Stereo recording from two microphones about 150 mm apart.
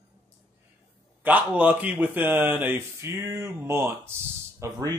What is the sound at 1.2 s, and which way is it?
Speech, 10° right (ahead or behind).